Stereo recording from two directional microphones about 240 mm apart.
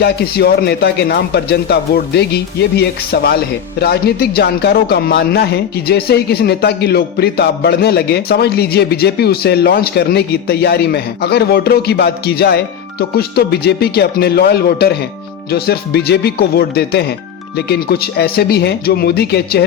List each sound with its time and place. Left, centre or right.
0.0 s a man's voice: left